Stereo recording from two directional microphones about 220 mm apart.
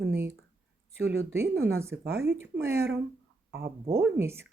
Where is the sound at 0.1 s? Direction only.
10° right (ahead or behind).